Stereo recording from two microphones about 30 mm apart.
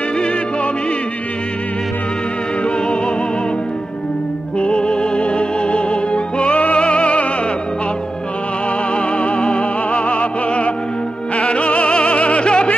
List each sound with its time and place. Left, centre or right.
4.6 s music: left
6.5 s music: left
6.8 s music: left
8.9 s music: left
12.4 s a sound: left